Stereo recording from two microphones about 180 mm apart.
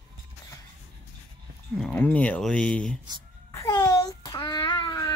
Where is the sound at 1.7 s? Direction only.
5° left (ahead or behind).